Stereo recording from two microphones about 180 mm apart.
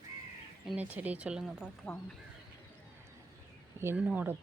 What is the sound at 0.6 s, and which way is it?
Speech, 5° right (ahead or behind).